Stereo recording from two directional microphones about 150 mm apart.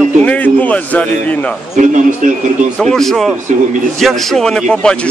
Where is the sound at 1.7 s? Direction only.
55° right (ahead or behind).